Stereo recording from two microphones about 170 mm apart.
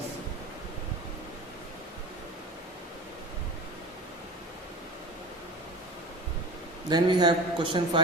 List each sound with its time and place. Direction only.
6.8 s a man's voice: 25° right (ahead or behind)